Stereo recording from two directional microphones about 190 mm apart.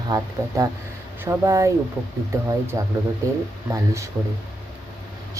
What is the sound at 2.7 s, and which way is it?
Speech, 20° right (ahead or behind).